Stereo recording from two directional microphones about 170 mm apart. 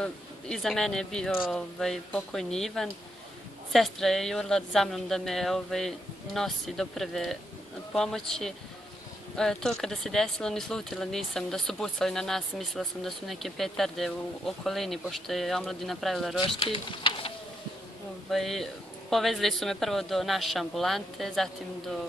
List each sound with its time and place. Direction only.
0.0 s speech: 5° left (ahead or behind)
16.3 s speech: 30° left (ahead or behind)
18.3 s speech: centre (ahead or behind)